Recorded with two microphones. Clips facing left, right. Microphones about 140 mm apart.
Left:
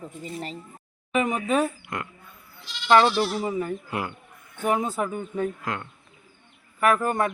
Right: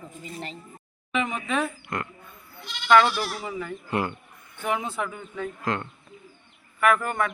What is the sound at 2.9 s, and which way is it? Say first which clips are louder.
Speech: left 1 dB; 25° left (ahead or behind).